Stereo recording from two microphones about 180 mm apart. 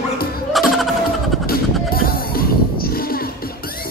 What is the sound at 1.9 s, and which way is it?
Music, 55° left (ahead or behind).